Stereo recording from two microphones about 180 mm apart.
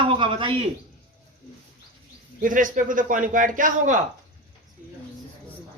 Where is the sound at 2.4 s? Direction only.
50° right (ahead or behind).